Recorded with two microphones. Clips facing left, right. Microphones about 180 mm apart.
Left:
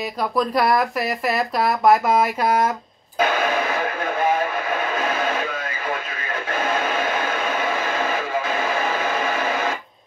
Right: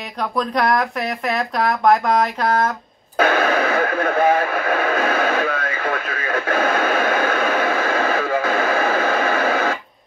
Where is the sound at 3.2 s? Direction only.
60° right (ahead or behind).